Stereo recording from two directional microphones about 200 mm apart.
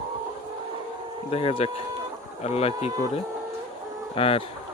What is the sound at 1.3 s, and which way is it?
Speech, 30° left (ahead or behind).